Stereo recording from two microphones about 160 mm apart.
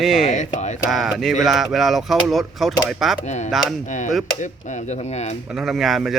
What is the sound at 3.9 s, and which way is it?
Speech, 50° left (ahead or behind).